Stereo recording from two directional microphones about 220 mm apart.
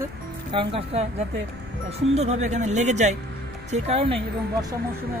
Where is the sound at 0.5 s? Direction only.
25° right (ahead or behind).